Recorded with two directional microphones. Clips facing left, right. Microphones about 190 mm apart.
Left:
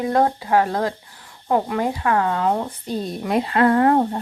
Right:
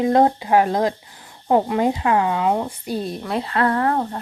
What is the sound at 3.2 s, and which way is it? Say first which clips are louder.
Speech: left 6 dB; 15° left (ahead or behind).